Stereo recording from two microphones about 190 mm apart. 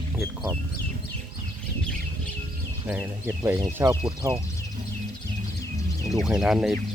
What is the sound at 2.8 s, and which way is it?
Speech, 10° right (ahead or behind).